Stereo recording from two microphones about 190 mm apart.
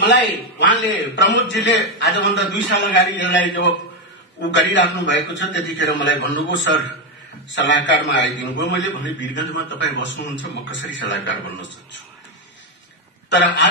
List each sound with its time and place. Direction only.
0.0 s a man's voice: 70° left (ahead or behind)
7.4 s a man's voice: 75° left (ahead or behind)
13.3 s a man's voice: 70° left (ahead or behind)